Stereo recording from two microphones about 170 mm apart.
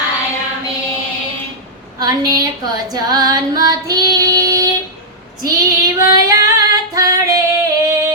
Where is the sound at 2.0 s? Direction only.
20° right (ahead or behind).